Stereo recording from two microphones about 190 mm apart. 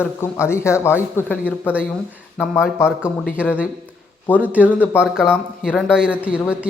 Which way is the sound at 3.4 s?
5° right (ahead or behind).